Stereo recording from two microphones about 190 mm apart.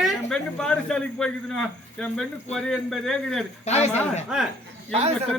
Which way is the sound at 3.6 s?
35° left (ahead or behind).